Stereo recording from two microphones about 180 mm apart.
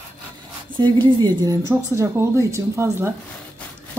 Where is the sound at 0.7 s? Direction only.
25° right (ahead or behind).